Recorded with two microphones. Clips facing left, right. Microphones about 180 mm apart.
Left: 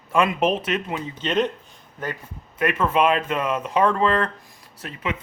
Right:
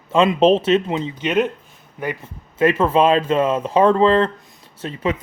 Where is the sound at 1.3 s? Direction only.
10° right (ahead or behind).